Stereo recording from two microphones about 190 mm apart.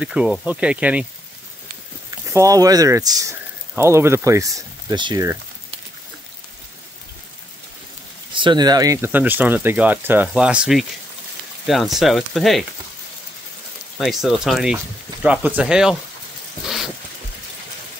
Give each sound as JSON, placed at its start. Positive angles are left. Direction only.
{"t": 0.0, "sound": "speech", "side_deg": -5}
{"t": 2.0, "sound": "speech", "side_deg": -15}
{"t": 8.4, "sound": "speech", "side_deg": -25}
{"t": 13.9, "sound": "speech", "side_deg": 0}
{"t": 16.6, "sound": "a sound", "side_deg": 0}